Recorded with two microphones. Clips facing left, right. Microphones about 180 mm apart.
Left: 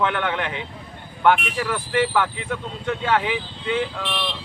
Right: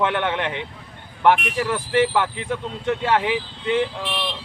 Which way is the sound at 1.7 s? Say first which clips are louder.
Right 2 dB; 25° right (ahead or behind).